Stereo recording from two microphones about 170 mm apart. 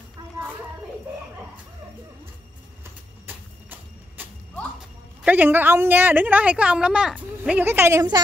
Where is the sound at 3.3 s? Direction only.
10° right (ahead or behind).